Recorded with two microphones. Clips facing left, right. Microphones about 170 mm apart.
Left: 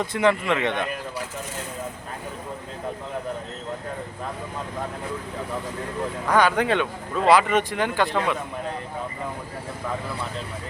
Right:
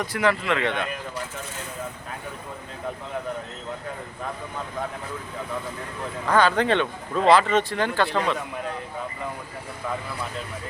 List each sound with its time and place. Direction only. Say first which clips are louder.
0.0 s speech: left 2 dB; 25° left (ahead or behind)
6.2 s speech: even; 10° left (ahead or behind)